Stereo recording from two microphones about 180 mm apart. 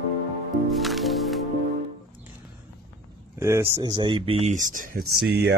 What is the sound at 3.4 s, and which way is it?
Speech, 15° right (ahead or behind).